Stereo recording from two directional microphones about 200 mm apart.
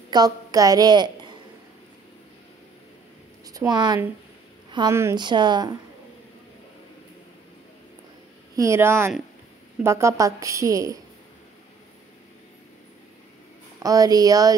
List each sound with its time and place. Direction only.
0.1 s a woman's voice: 20° right (ahead or behind)
3.4 s a woman's voice: 20° right (ahead or behind)
8.5 s a woman's voice: 15° right (ahead or behind)
13.8 s a woman's voice: 15° right (ahead or behind)